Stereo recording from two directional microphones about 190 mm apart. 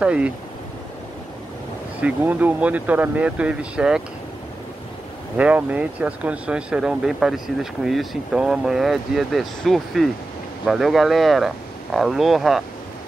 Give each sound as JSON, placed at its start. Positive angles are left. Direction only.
{"t": 0.0, "sound": "speech", "side_deg": -5}
{"t": 2.0, "sound": "speech", "side_deg": -5}
{"t": 5.4, "sound": "speech", "side_deg": -10}